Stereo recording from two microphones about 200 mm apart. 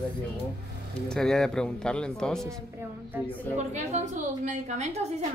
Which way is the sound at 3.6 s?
35° right (ahead or behind).